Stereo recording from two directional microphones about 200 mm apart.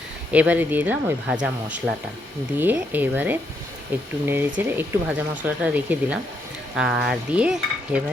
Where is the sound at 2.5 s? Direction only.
10° right (ahead or behind).